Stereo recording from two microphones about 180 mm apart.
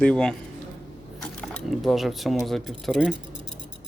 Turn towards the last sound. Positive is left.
turn(degrees=0)  # may be behind; listen again after turning